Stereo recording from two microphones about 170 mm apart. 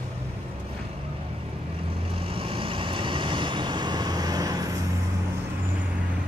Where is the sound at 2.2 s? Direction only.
30° right (ahead or behind).